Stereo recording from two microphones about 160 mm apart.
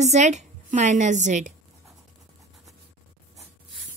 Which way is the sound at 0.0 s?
45° right (ahead or behind).